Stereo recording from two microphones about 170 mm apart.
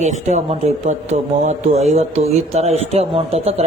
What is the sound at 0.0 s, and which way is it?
A man's voice, 45° right (ahead or behind).